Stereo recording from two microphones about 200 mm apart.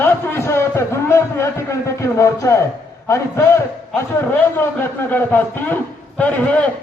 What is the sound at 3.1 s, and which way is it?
A man's voice, 15° left (ahead or behind).